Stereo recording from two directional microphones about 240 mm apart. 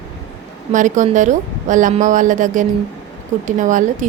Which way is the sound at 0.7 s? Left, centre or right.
Right.